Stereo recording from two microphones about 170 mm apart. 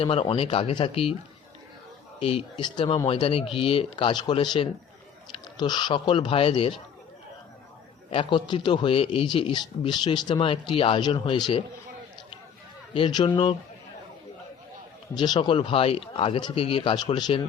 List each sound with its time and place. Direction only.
0.0 s speech: 35° left (ahead or behind)
2.2 s a man's voice: 30° left (ahead or behind)
8.1 s a man's voice: 30° left (ahead or behind)
12.9 s a man's voice: 30° left (ahead or behind)
15.1 s speech: 25° left (ahead or behind)